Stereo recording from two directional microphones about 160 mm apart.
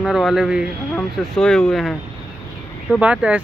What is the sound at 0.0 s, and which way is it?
Speech, centre (ahead or behind).